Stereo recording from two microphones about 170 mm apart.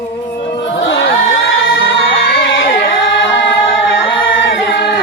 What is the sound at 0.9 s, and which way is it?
Music, 90° left.